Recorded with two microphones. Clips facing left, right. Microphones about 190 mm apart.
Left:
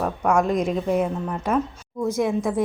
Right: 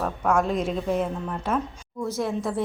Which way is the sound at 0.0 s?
10° left (ahead or behind).